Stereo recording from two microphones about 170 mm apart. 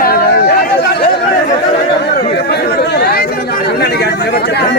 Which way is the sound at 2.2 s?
70° left (ahead or behind).